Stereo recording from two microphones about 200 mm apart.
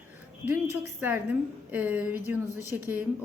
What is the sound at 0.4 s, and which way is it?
A woman's voice, 10° right (ahead or behind).